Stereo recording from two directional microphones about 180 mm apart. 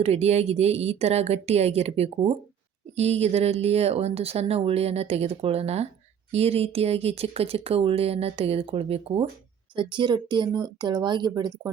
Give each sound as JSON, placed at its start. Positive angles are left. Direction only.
{"t": 0.0, "sound": "speech", "side_deg": -35}